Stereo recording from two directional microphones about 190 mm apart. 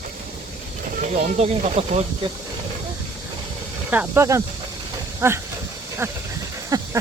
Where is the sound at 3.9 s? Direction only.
10° right (ahead or behind).